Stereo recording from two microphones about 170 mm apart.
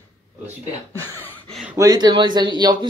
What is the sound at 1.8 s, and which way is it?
Speech, 20° right (ahead or behind).